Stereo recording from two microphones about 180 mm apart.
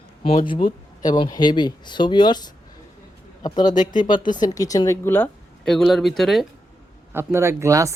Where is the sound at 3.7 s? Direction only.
45° left (ahead or behind).